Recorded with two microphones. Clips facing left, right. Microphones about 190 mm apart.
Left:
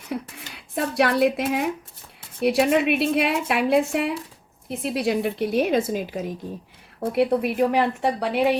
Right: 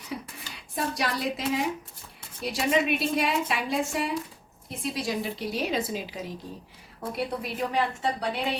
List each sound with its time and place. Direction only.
0.1 s a sound: 60° left (ahead or behind)
0.8 s a woman's voice: 60° left (ahead or behind)
7.0 s a woman's voice: 65° left (ahead or behind)